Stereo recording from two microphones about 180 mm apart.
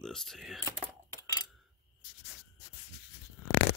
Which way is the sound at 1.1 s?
20° left (ahead or behind).